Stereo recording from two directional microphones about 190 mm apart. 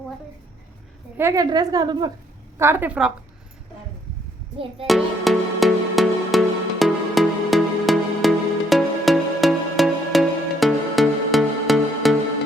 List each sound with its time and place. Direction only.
1.1 s a woman's voice: 15° right (ahead or behind)
2.6 s a woman's voice: 10° right (ahead or behind)
4.9 s music: centre (ahead or behind)